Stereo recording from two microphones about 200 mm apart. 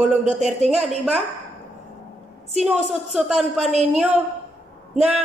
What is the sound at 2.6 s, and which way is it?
Speech, centre (ahead or behind).